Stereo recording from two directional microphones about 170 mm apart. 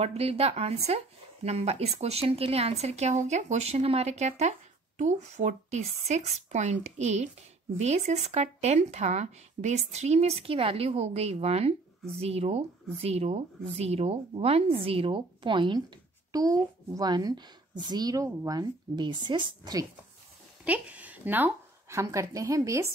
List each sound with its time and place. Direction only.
0.0 s speech: 35° right (ahead or behind)
20.6 s speech: 10° right (ahead or behind)